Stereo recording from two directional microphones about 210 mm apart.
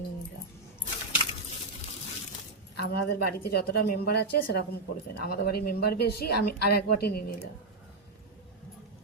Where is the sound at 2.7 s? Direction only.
50° left (ahead or behind).